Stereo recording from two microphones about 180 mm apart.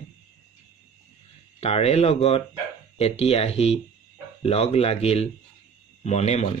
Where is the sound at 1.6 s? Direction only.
35° left (ahead or behind).